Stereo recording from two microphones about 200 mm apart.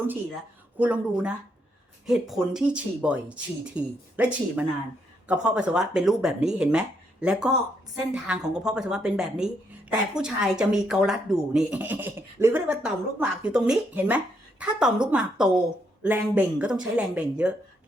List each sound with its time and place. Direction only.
0.8 s speech: 10° right (ahead or behind)